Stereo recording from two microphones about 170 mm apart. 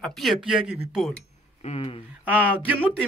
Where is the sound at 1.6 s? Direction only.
35° left (ahead or behind).